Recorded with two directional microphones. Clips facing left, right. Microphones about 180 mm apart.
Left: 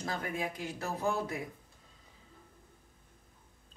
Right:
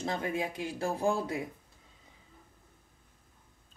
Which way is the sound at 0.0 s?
25° right (ahead or behind).